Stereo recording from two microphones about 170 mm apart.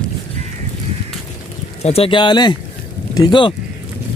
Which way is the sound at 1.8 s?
35° left (ahead or behind).